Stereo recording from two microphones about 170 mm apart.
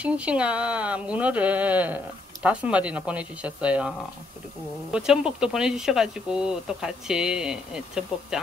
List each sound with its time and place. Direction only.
0.0 s speech: 5° right (ahead or behind)
4.9 s speech: 5° right (ahead or behind)